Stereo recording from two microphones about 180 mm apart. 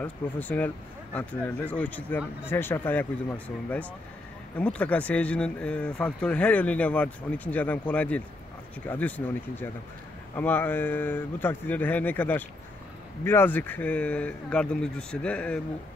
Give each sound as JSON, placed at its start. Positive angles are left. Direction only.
{"t": 0.0, "sound": "speech", "side_deg": 10}